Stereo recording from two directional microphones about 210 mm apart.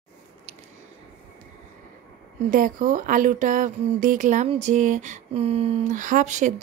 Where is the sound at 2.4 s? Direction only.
40° right (ahead or behind).